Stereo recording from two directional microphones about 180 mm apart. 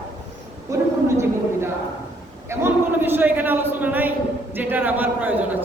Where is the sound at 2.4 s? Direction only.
15° right (ahead or behind).